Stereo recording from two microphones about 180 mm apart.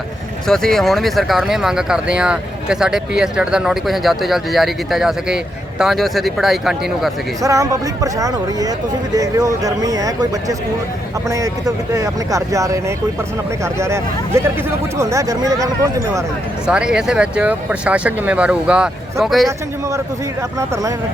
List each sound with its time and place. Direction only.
0.4 s speech: 5° left (ahead or behind)
7.4 s speech: 20° right (ahead or behind)
11.3 s speech: 20° right (ahead or behind)
16.6 s speech: 5° right (ahead or behind)